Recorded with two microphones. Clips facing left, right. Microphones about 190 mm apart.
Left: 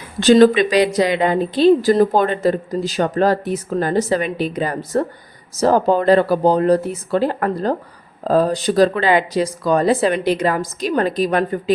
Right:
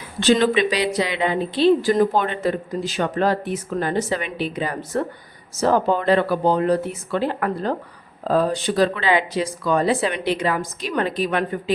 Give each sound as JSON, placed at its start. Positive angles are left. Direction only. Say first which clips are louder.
{"t": 0.2, "sound": "a woman's voice", "louder": "left 6 dB", "side_deg": 40}